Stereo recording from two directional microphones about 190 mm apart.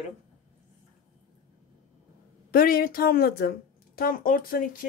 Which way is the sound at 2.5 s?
50° left (ahead or behind).